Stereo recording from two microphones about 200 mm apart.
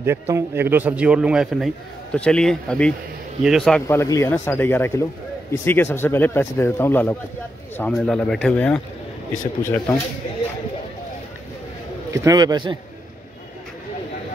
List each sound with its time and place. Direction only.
0.0 s a man's voice: 10° right (ahead or behind)
3.8 s a man's voice: 15° left (ahead or behind)
12.1 s a man's voice: 15° right (ahead or behind)